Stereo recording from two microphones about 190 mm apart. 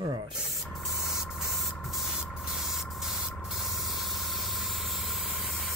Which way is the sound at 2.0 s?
Centre (ahead or behind).